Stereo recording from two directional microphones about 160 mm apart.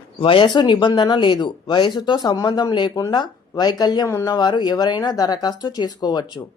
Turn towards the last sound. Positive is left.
turn(degrees=25)  # may be behind; listen again after turning